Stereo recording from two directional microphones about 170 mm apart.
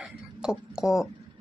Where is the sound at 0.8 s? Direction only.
5° right (ahead or behind).